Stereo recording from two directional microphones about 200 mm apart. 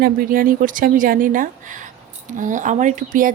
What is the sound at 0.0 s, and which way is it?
Speech, 45° right (ahead or behind).